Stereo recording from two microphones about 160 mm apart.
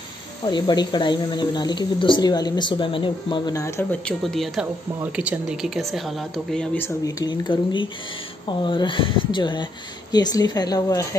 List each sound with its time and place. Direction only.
0.5 s speech: 25° left (ahead or behind)
4.0 s speech: centre (ahead or behind)
7.1 s speech: 25° left (ahead or behind)